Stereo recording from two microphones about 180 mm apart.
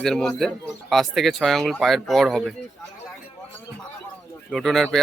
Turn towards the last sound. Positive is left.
turn(degrees=0)  # may be behind; listen again after turning